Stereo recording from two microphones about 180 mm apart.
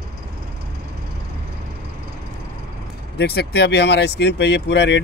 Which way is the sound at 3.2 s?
65° left (ahead or behind).